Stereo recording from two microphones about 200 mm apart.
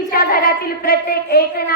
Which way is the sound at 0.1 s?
45° left (ahead or behind).